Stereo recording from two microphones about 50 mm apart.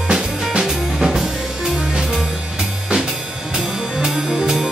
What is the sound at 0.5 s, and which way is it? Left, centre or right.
Drum kit, centre.